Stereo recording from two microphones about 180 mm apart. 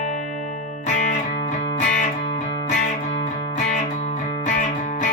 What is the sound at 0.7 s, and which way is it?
Music, 40° left (ahead or behind).